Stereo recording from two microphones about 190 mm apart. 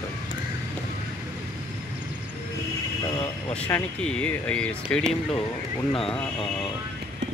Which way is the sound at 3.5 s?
5° left (ahead or behind).